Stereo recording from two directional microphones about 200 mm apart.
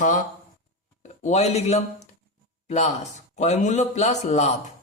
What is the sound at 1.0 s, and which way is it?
Speech, 35° left (ahead or behind).